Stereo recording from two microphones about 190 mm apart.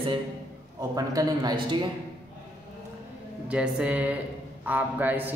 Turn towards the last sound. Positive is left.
turn(degrees=-10)  # may be behind; listen again after turning